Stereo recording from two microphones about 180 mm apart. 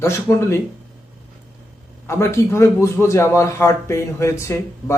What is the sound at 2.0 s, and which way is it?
A man's voice, 15° left (ahead or behind).